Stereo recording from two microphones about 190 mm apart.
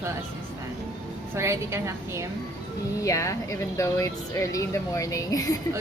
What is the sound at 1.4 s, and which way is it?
Speech, 15° right (ahead or behind).